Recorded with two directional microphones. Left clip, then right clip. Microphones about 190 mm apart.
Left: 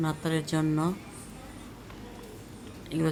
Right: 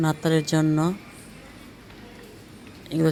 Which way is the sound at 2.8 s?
25° right (ahead or behind).